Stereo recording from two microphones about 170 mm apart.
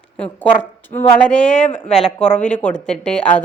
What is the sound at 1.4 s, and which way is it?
Speech, 45° left (ahead or behind).